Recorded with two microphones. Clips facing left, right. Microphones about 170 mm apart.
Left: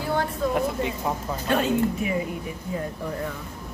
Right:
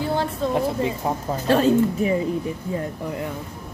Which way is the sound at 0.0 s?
25° right (ahead or behind).